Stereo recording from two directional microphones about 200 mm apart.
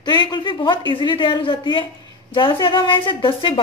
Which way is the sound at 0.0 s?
20° left (ahead or behind).